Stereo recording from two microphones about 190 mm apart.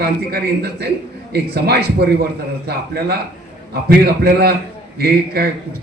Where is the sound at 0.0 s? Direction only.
55° right (ahead or behind).